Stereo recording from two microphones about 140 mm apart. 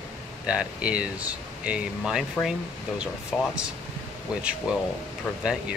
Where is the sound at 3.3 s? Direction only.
Centre (ahead or behind).